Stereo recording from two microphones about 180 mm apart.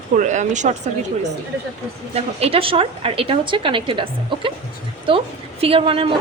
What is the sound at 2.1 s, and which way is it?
A woman's voice, 35° right (ahead or behind).